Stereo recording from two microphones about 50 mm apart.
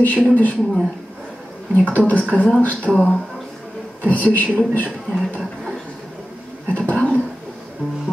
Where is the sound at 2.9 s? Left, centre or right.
Centre.